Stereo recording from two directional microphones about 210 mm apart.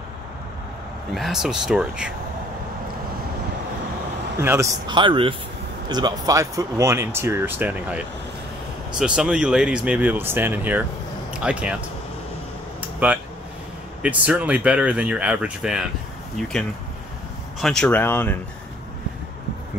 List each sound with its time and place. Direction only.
1.1 s speech: centre (ahead or behind)
4.4 s a man's voice: 10° right (ahead or behind)
13.0 s speech: 5° right (ahead or behind)
17.6 s speech: centre (ahead or behind)